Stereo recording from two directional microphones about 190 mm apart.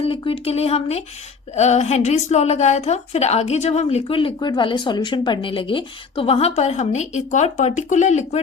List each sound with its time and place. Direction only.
0.0 s a woman's voice: 30° left (ahead or behind)